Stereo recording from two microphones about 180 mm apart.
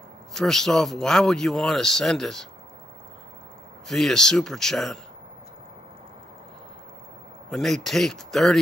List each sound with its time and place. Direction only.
0.3 s speech: centre (ahead or behind)
3.9 s speech: centre (ahead or behind)
7.4 s speech: centre (ahead or behind)